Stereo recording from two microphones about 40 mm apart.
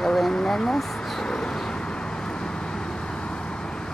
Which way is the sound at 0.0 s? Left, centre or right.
Centre.